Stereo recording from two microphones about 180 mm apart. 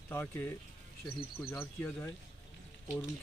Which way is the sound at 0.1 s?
10° left (ahead or behind).